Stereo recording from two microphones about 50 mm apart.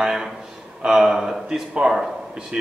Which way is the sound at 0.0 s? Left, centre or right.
Centre.